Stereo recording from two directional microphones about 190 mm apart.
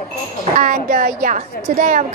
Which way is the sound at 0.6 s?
45° right (ahead or behind).